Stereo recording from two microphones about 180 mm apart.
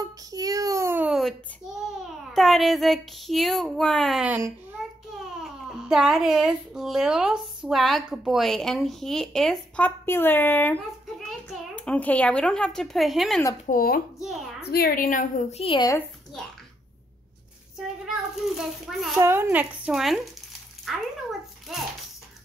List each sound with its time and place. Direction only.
0.3 s a sound: 20° right (ahead or behind)
1.9 s speech: centre (ahead or behind)
4.8 s child singing: centre (ahead or behind)
5.4 s a child's voice: centre (ahead or behind)
13.7 s a woman's voice: 55° left (ahead or behind)
15.6 s speech: 30° left (ahead or behind)
17.7 s a child's voice: centre (ahead or behind)
19.1 s a woman's voice: 15° right (ahead or behind)